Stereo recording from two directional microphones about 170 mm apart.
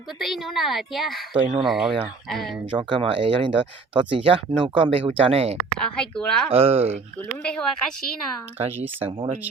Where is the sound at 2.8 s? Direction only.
30° right (ahead or behind).